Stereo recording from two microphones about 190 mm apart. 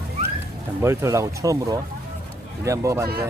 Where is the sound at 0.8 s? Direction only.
15° right (ahead or behind).